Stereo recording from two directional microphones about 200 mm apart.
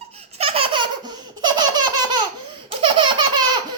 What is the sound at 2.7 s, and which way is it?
Baby laughter, 25° right (ahead or behind).